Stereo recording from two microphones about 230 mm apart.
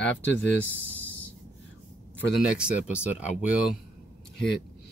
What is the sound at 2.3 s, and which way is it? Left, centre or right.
Speech, centre.